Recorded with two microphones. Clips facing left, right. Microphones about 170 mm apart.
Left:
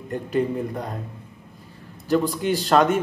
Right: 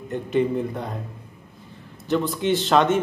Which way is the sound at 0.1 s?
5° left (ahead or behind).